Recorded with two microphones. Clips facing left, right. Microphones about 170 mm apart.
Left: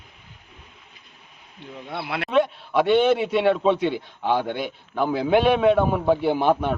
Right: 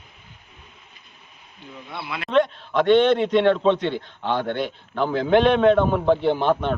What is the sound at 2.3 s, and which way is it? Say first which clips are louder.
A man's voice: right 1 dB; 10° left (ahead or behind).